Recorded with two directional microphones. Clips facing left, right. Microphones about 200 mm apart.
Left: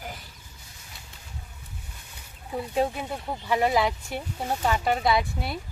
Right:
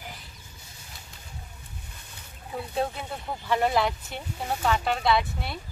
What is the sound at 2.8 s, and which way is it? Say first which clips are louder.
Speech: left 3 dB; 10° left (ahead or behind).